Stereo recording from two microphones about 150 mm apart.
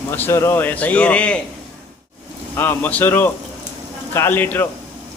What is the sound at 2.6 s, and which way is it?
A man's voice, 10° left (ahead or behind).